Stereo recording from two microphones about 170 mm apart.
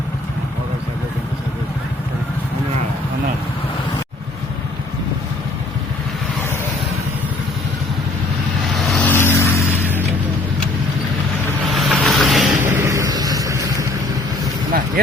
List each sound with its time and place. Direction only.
8.6 s vehicle: centre (ahead or behind)
11.7 s vehicle: centre (ahead or behind)
12.6 s a sound: 15° right (ahead or behind)